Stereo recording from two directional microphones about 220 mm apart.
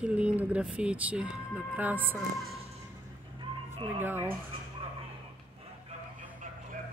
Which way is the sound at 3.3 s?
25° right (ahead or behind).